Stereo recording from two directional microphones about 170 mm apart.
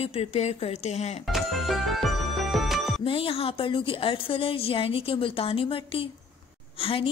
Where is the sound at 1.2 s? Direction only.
Centre (ahead or behind).